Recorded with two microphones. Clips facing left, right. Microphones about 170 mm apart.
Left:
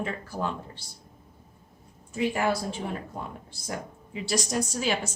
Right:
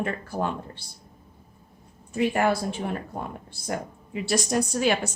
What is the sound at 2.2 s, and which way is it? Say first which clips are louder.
Speech: right 3 dB; 60° right (ahead or behind).